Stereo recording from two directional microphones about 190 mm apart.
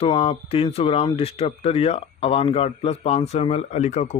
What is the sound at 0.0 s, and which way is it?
A man's voice, 30° left (ahead or behind).